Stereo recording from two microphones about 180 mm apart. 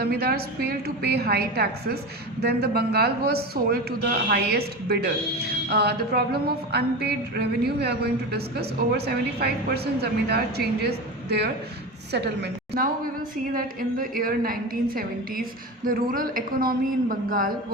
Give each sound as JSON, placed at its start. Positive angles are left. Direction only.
{"t": 0.0, "sound": "a woman's voice", "side_deg": -60}
{"t": 13.3, "sound": "a woman's voice", "side_deg": -50}